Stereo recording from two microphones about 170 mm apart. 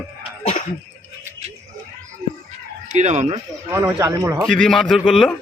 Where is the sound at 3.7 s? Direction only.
15° right (ahead or behind).